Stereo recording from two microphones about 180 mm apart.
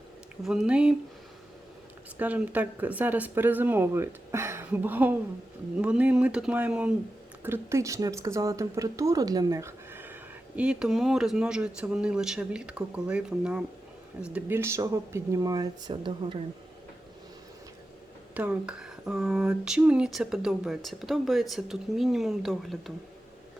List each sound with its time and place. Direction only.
0.4 s speech: 5° right (ahead or behind)
2.1 s speech: 10° right (ahead or behind); by 16.4 s 30° right (ahead or behind)
18.3 s speech: 5° right (ahead or behind)